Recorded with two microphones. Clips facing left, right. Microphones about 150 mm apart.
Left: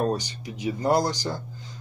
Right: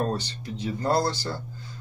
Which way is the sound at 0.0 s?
15° left (ahead or behind).